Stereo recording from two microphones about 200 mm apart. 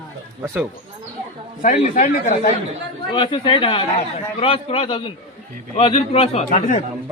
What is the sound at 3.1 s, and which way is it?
A man's voice, 25° left (ahead or behind).